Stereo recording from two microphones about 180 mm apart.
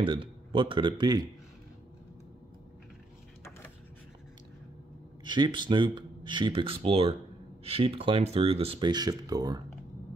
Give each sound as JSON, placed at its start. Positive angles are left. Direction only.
{"t": 0.0, "sound": "speech", "side_deg": -30}
{"t": 5.2, "sound": "speech", "side_deg": -25}